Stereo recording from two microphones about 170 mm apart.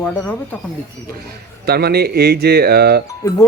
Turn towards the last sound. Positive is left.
turn(degrees=15)  # may be behind; listen again after turning